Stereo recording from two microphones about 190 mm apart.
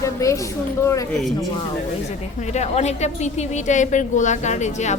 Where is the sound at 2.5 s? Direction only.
35° left (ahead or behind).